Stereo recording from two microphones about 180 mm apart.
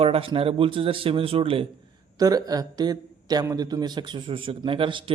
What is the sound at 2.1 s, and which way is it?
A man's voice, 20° right (ahead or behind).